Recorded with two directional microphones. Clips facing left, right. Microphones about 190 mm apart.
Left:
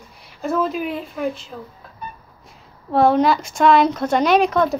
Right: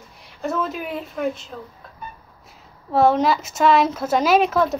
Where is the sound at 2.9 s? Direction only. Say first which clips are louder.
Left 2 dB; centre (ahead or behind).